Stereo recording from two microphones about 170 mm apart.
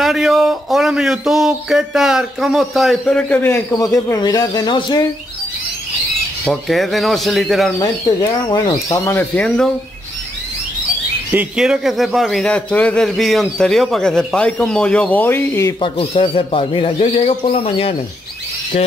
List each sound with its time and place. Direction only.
0.0 s speech: centre (ahead or behind); by 5.0 s 25° left (ahead or behind)
6.4 s speech: centre (ahead or behind)
7.8 s speech: 20° left (ahead or behind)
11.3 s speech: 5° right (ahead or behind); by 15.7 s 15° left (ahead or behind)
15.8 s speech: 30° left (ahead or behind)